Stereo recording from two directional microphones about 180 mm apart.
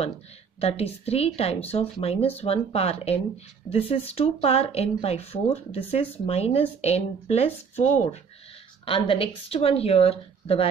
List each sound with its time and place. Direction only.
0.6 s speech: 35° left (ahead or behind)